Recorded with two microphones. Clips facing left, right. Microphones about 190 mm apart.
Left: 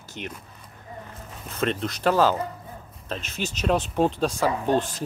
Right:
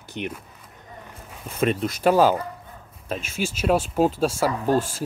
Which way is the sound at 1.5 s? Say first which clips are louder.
Right 3 dB; 10° right (ahead or behind).